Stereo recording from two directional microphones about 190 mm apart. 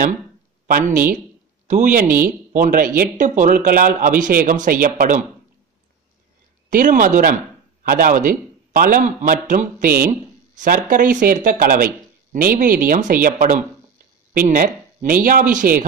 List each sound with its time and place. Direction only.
0.7 s speech: 45° right (ahead or behind)
6.7 s speech: 45° right (ahead or behind)